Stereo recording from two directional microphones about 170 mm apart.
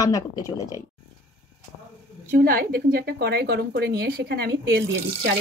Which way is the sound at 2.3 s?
60° right (ahead or behind).